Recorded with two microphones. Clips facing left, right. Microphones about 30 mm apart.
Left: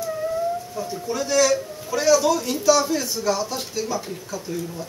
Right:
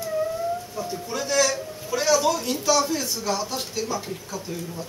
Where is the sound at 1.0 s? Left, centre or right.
Centre.